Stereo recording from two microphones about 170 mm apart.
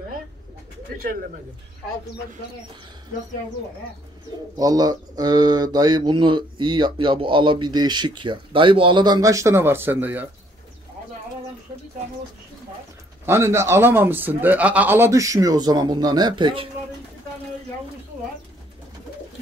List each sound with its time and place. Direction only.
4.6 s speech: 20° right (ahead or behind)
13.2 s a man's voice: 15° right (ahead or behind)